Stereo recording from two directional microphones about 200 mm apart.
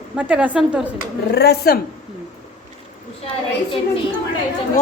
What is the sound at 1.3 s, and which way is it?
Speech, 55° left (ahead or behind).